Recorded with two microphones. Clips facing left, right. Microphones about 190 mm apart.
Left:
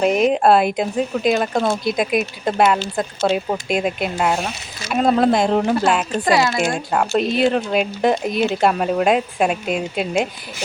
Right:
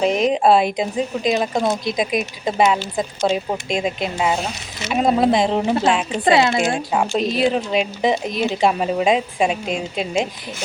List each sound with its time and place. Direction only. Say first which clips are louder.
0.0 s speech: left 1 dB; 5° left (ahead or behind)
6.2 s a woman's voice: right 3 dB; 25° right (ahead or behind)
6.6 s speech: even; centre (ahead or behind)